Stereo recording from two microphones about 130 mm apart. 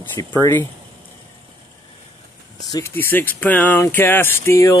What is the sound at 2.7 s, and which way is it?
Speech, 20° left (ahead or behind).